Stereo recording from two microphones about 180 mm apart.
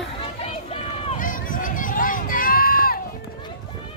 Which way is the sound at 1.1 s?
50° left (ahead or behind).